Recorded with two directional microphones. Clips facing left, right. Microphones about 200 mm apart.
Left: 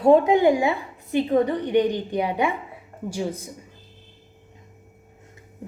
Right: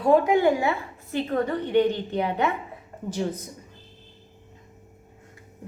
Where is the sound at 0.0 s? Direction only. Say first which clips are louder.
Left 3 dB; 20° left (ahead or behind).